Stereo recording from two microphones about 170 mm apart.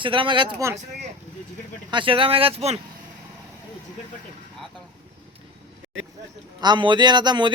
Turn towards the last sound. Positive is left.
turn(degrees=-25)  # may be behind; listen again after turning